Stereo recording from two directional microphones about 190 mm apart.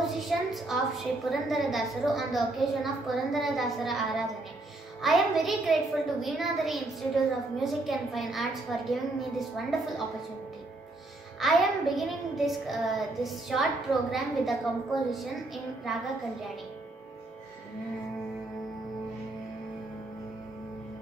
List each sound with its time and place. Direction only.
0.0 s a woman's voice: centre (ahead or behind)
11.3 s a woman's voice: centre (ahead or behind)